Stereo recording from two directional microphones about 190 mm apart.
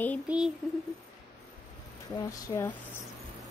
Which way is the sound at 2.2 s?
20° left (ahead or behind).